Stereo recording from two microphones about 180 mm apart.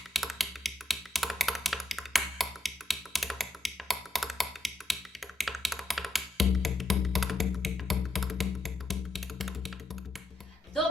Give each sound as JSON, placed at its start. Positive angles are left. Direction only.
{"t": 0.1, "sound": "computer keyboard", "side_deg": 0}